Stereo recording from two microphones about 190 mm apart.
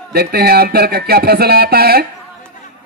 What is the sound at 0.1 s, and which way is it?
Speech, 55° right (ahead or behind).